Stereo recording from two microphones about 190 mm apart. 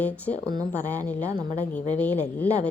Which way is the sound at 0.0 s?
5° left (ahead or behind).